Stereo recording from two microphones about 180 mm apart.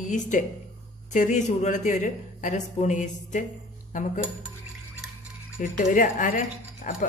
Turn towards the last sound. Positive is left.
turn(degrees=45)  # may be behind; listen again after turning